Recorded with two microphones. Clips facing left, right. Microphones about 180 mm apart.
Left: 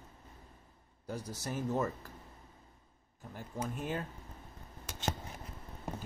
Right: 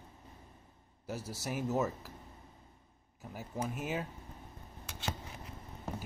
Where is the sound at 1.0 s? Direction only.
5° right (ahead or behind).